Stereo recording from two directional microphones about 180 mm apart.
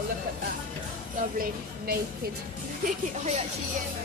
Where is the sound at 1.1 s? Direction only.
55° right (ahead or behind).